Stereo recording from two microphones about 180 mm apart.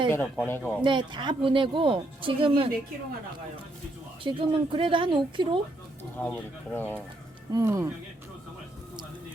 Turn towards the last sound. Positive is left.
turn(degrees=-15)  # may be behind; listen again after turning